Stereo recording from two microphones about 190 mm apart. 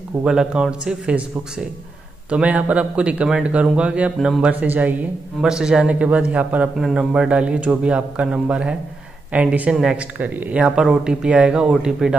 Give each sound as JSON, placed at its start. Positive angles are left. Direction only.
{"t": 0.2, "sound": "speech", "side_deg": -5}